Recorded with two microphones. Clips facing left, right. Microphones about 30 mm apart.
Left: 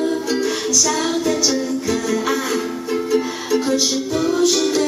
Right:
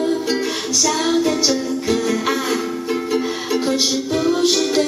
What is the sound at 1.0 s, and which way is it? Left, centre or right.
Music, centre.